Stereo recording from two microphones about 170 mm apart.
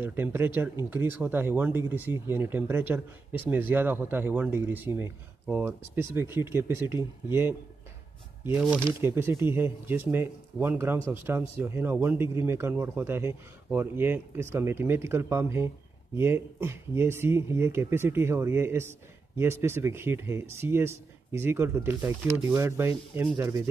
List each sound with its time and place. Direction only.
0.0 s speech: 15° right (ahead or behind)